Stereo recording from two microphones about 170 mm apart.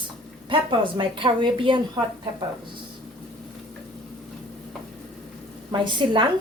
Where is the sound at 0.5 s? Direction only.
30° right (ahead or behind).